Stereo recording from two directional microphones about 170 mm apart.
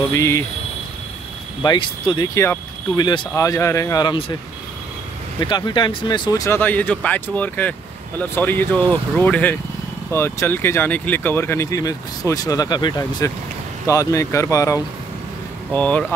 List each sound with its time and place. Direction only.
0.1 s speech: 15° left (ahead or behind)
1.6 s speech: 30° left (ahead or behind)
5.4 s speech: 25° left (ahead or behind); by 16.1 s 10° left (ahead or behind)